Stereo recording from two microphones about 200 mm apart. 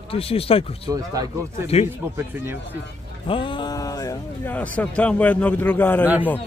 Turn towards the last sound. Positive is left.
turn(degrees=10)  # may be behind; listen again after turning